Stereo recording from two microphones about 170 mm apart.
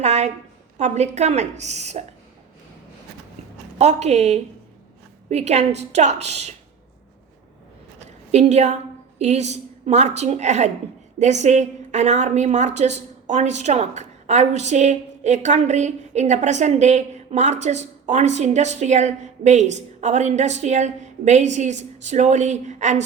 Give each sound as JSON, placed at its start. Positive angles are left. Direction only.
{"t": 0.0, "sound": "a sound", "side_deg": -40}
{"t": 0.8, "sound": "a woman's voice", "side_deg": -40}
{"t": 3.8, "sound": "a woman's voice", "side_deg": -40}
{"t": 8.0, "sound": "a woman's voice", "side_deg": -40}